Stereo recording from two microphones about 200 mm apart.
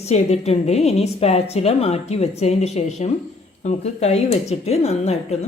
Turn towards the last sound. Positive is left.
turn(degrees=30)  # may be behind; listen again after turning